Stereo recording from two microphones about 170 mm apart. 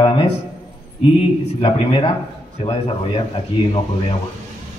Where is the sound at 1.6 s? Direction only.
30° left (ahead or behind).